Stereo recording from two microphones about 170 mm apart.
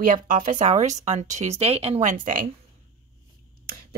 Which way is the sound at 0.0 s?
55° right (ahead or behind).